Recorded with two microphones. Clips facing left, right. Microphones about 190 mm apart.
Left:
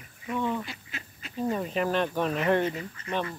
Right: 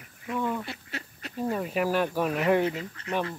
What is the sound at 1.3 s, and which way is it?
Speech, 5° right (ahead or behind).